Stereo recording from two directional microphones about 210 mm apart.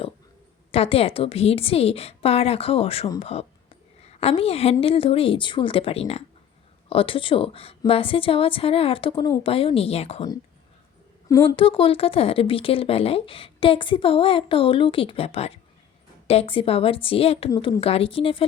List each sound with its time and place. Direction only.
0.7 s speech: 30° left (ahead or behind)